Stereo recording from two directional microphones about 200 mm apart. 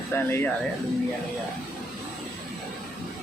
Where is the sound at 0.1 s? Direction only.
10° left (ahead or behind).